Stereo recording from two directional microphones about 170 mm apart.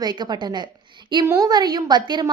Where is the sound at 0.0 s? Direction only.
25° right (ahead or behind).